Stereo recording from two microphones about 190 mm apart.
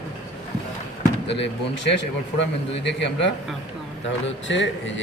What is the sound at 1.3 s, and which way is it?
Speech, 65° left (ahead or behind).